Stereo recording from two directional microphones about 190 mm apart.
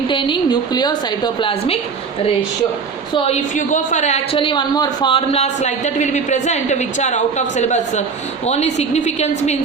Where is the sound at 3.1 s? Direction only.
35° left (ahead or behind).